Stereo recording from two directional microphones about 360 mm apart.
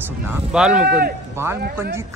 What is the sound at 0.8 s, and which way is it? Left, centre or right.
Speech, right.